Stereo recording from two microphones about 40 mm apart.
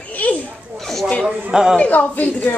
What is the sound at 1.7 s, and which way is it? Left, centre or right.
Speech, left.